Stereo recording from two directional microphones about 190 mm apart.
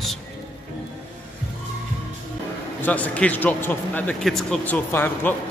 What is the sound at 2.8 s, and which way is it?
Speech, 10° left (ahead or behind).